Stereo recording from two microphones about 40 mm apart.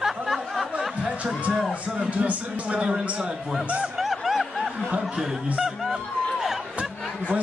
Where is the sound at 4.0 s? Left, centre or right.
Centre.